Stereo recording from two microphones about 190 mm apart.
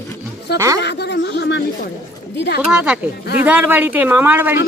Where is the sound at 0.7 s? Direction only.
60° left (ahead or behind).